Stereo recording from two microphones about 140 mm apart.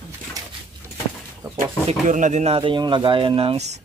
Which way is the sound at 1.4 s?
25° right (ahead or behind).